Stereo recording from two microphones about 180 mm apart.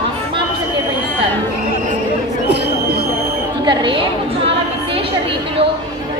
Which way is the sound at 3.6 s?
30° right (ahead or behind).